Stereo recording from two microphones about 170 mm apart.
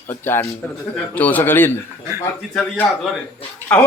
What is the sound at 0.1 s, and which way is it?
A man's voice, 15° left (ahead or behind).